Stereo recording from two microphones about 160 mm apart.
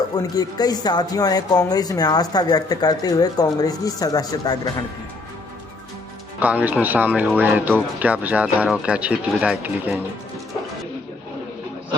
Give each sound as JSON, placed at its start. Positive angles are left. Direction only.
{"t": 0.1, "sound": "speech", "side_deg": 25}
{"t": 6.4, "sound": "speech", "side_deg": -10}